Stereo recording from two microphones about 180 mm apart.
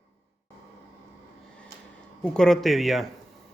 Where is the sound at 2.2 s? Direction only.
5° left (ahead or behind).